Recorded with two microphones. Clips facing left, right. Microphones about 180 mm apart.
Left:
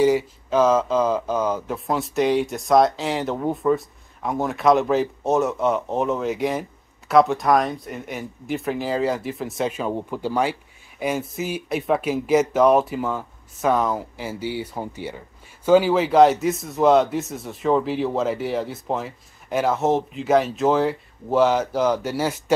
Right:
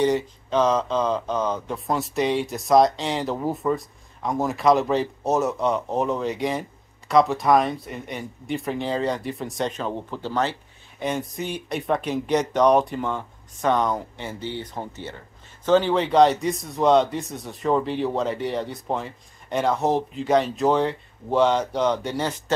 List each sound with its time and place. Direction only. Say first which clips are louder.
0.0 s speech: left 3 dB; 5° left (ahead or behind)